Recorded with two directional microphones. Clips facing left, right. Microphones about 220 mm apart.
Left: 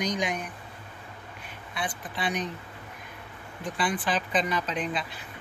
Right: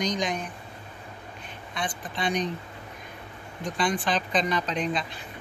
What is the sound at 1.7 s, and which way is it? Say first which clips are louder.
Speech: right 1 dB; 5° left (ahead or behind).